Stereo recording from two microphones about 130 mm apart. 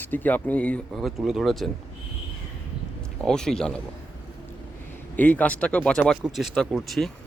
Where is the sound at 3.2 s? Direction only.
5° left (ahead or behind).